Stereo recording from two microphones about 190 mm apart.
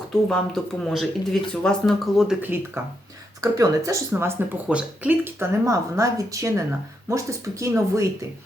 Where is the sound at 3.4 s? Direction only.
15° right (ahead or behind).